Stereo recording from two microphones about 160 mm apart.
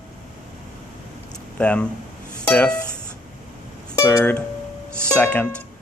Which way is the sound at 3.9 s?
15° left (ahead or behind).